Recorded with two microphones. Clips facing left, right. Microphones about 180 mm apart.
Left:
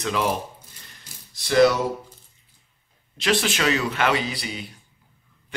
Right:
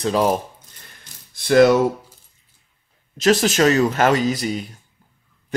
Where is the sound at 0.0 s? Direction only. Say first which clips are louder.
Right 6 dB; 40° right (ahead or behind).